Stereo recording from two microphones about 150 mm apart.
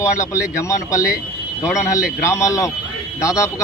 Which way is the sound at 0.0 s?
20° left (ahead or behind).